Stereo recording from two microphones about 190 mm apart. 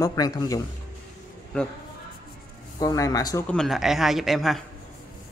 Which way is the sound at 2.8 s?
20° left (ahead or behind).